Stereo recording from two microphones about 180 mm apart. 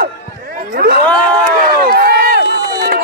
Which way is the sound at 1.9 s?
60° right (ahead or behind).